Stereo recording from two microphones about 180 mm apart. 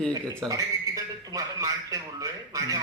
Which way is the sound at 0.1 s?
20° right (ahead or behind).